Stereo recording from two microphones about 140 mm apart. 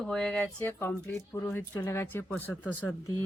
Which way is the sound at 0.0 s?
5° left (ahead or behind).